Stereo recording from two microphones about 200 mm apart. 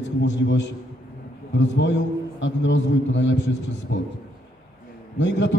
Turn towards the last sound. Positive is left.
turn(degrees=65)  # may be behind; listen again after turning